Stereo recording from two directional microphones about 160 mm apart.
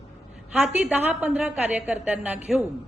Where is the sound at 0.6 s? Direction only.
10° right (ahead or behind).